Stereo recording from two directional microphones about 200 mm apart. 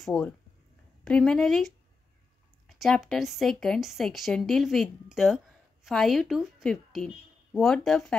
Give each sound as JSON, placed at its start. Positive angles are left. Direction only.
{"t": 0.0, "sound": "speech", "side_deg": 5}